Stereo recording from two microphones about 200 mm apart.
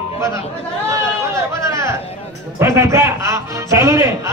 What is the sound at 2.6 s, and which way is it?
Speech, 15° right (ahead or behind).